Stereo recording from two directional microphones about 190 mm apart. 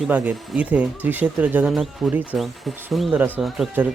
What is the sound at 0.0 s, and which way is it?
Speech, 5° right (ahead or behind).